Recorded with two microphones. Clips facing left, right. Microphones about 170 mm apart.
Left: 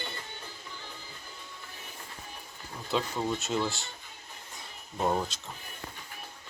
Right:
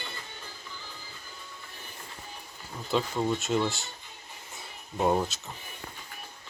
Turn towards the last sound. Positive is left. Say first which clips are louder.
# right 3 dB
turn(degrees=-5)  # may be behind; listen again after turning